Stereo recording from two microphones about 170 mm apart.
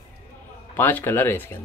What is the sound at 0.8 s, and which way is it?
Speech, 10° left (ahead or behind).